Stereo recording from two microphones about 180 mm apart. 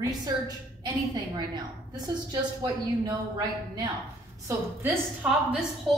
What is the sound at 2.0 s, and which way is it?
Speech, 20° right (ahead or behind).